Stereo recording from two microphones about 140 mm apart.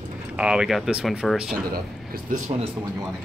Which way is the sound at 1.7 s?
90° right.